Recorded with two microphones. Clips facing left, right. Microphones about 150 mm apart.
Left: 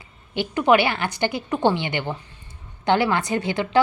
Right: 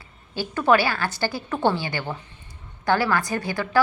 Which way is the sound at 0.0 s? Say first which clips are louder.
Left 3 dB; 20° left (ahead or behind).